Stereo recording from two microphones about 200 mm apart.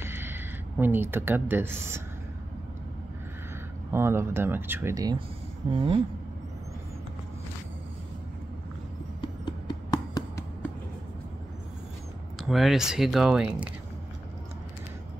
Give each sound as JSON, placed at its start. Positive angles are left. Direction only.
{"t": 0.0, "sound": "speech", "side_deg": -10}
{"t": 3.9, "sound": "speech", "side_deg": -10}
{"t": 9.2, "sound": "a sound", "side_deg": 20}
{"t": 12.4, "sound": "speech", "side_deg": 0}